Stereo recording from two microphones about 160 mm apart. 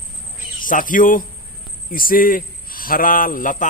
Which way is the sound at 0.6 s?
60° left (ahead or behind).